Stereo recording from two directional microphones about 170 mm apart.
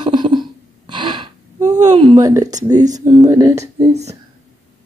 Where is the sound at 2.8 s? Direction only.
45° right (ahead or behind).